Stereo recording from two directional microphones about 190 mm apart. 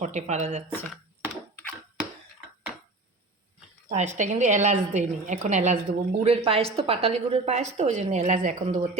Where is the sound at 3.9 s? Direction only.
40° right (ahead or behind).